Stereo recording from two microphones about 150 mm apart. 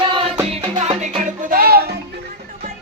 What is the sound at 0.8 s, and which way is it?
Music, 45° right (ahead or behind).